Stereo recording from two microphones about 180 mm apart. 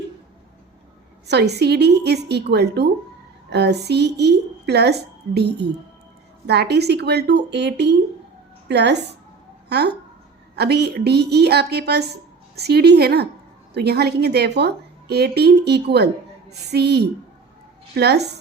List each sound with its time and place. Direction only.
1.3 s a woman's voice: 65° right (ahead or behind)